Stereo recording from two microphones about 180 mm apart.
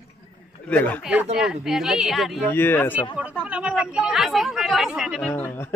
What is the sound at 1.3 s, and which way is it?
Speech, 5° right (ahead or behind).